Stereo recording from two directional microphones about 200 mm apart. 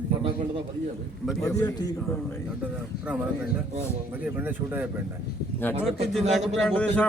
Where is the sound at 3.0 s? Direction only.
5° right (ahead or behind).